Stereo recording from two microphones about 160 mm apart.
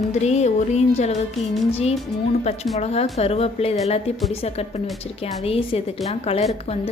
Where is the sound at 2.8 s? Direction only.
40° left (ahead or behind).